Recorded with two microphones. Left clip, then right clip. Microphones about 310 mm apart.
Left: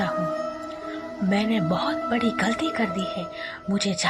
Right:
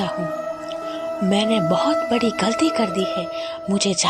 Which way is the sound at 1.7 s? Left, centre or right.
Centre.